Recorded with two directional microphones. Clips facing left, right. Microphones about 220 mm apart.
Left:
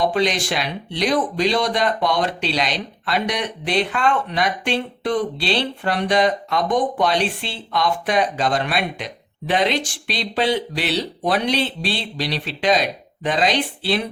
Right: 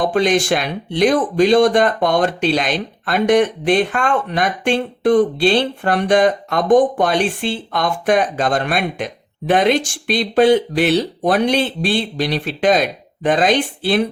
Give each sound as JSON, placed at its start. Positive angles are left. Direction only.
{"t": 0.0, "sound": "speech", "side_deg": -50}